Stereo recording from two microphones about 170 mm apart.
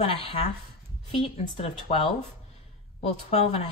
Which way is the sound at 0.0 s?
35° left (ahead or behind).